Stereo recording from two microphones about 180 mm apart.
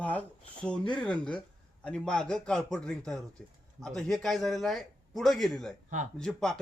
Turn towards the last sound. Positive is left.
turn(degrees=5)  # may be behind; listen again after turning